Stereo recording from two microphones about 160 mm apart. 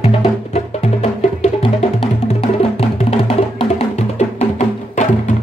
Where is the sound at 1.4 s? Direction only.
40° left (ahead or behind).